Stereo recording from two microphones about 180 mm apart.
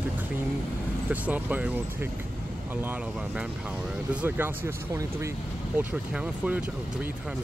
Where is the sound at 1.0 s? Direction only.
10° right (ahead or behind).